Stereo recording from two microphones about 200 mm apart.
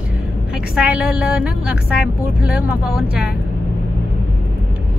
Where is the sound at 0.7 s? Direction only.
5° right (ahead or behind).